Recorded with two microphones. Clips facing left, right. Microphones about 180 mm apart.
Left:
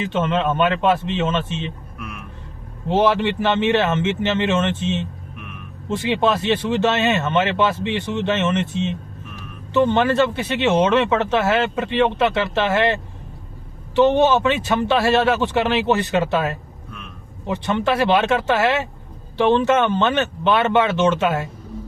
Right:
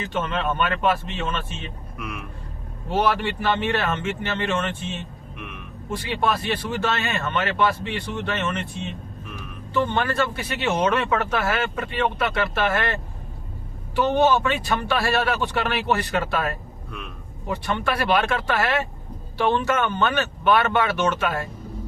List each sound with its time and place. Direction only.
0.0 s speech: 25° left (ahead or behind)
2.9 s speech: 20° left (ahead or behind)
17.6 s speech: 20° left (ahead or behind)